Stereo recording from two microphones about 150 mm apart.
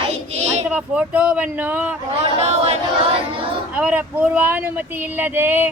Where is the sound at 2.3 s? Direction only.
45° right (ahead or behind).